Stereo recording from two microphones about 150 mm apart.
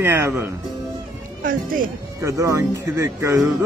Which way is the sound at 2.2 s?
20° right (ahead or behind).